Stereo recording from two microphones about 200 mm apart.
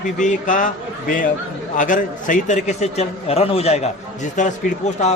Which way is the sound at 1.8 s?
40° left (ahead or behind).